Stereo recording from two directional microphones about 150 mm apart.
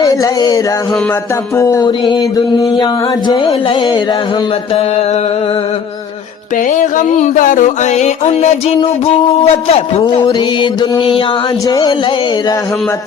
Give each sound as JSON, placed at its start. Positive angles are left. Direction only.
{"t": 0.0, "sound": "speech", "side_deg": 25}
{"t": 1.5, "sound": "music", "side_deg": 20}
{"t": 6.7, "sound": "music", "side_deg": 60}